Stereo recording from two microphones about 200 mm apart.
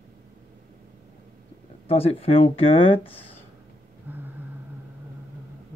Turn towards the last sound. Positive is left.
turn(degrees=-10)  # may be behind; listen again after turning